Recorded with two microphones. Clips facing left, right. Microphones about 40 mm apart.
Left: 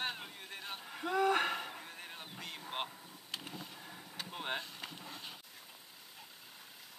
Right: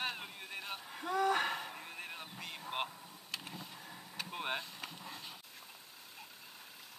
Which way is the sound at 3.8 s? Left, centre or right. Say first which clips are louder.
Right 1 dB; centre.